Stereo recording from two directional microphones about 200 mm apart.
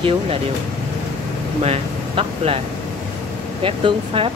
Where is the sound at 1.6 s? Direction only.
30° right (ahead or behind).